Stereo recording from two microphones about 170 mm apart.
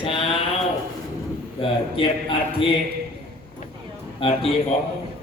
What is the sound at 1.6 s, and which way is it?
A man's voice, 30° left (ahead or behind).